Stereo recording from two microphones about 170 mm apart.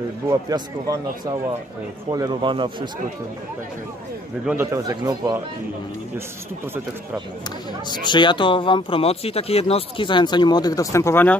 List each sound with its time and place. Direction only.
0.3 s a man's voice: 25° right (ahead or behind)
4.5 s a man's voice: 15° right (ahead or behind)
8.0 s speech: 25° left (ahead or behind)